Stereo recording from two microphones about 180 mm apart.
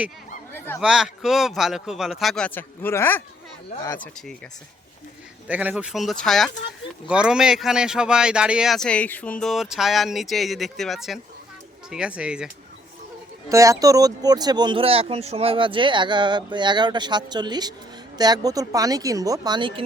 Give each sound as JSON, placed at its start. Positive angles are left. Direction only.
{"t": 0.5, "sound": "a sound", "side_deg": 10}
{"t": 0.8, "sound": "speech", "side_deg": -5}
{"t": 5.5, "sound": "speech", "side_deg": -5}
{"t": 13.5, "sound": "speech", "side_deg": -15}